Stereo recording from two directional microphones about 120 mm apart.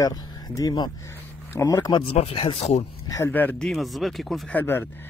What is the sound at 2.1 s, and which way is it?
Speech, 50° left (ahead or behind).